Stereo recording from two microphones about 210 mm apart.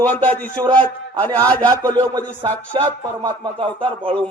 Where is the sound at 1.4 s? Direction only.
15° right (ahead or behind).